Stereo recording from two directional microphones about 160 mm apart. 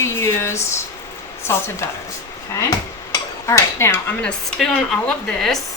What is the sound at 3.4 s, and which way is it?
Speech, 15° left (ahead or behind).